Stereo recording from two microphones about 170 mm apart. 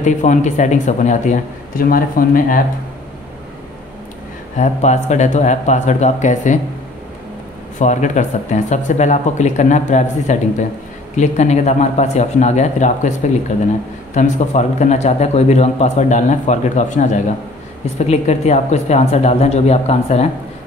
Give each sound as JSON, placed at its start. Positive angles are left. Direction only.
{"t": 0.0, "sound": "a man's voice", "side_deg": 45}
{"t": 4.6, "sound": "a man's voice", "side_deg": 45}
{"t": 7.8, "sound": "a man's voice", "side_deg": 45}
{"t": 14.1, "sound": "a man's voice", "side_deg": 45}